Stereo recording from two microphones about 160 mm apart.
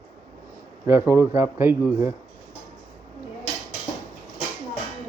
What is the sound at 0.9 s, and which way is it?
Speech, 15° right (ahead or behind).